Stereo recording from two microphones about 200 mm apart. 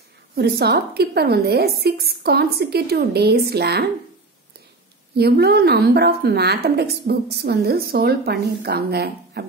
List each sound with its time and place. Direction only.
0.4 s a woman's voice: 55° right (ahead or behind)
5.1 s a woman's voice: 55° right (ahead or behind)